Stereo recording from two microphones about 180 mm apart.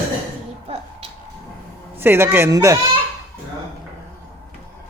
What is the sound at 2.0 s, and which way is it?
Speech, 10° right (ahead or behind).